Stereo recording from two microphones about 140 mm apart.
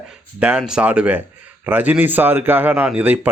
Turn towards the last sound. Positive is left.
turn(degrees=-10)  # may be behind; listen again after turning